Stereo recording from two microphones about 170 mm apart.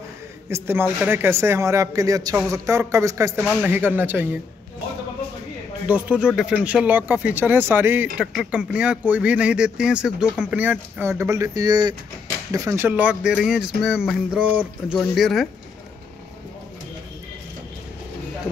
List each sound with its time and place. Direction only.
0.5 s speech: 15° right (ahead or behind)
5.9 s speech: 10° right (ahead or behind)